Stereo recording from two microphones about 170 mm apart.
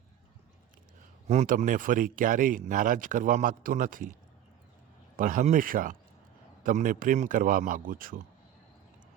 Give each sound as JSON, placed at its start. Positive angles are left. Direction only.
{"t": 1.3, "sound": "speech", "side_deg": -45}
{"t": 5.1, "sound": "speech", "side_deg": -50}